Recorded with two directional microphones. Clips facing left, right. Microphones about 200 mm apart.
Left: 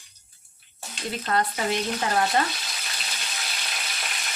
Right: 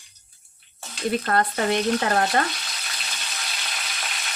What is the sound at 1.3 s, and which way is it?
Speech, 55° right (ahead or behind).